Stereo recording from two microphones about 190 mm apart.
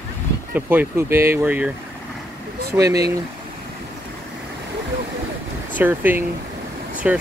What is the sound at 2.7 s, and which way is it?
Speech, 15° right (ahead or behind).